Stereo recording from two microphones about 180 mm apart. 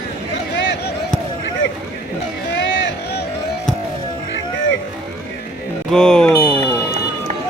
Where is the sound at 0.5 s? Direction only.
85° left.